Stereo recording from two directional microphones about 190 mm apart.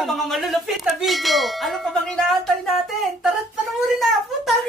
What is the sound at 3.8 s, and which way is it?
Bell, centre (ahead or behind).